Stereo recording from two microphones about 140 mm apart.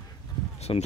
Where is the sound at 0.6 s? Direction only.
50° left (ahead or behind).